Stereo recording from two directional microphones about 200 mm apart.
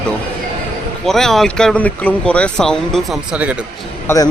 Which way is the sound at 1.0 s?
Centre (ahead or behind).